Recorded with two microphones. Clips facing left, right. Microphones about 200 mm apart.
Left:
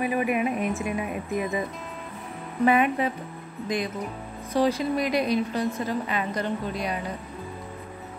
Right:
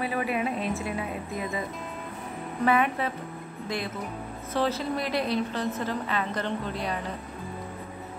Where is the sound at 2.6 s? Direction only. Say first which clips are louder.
Left 3 dB; 15° left (ahead or behind).